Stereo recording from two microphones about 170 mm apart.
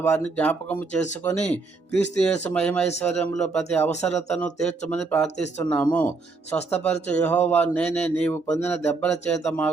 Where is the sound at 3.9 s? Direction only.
40° left (ahead or behind).